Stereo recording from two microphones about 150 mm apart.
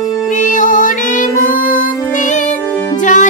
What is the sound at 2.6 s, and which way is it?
Music, 10° left (ahead or behind).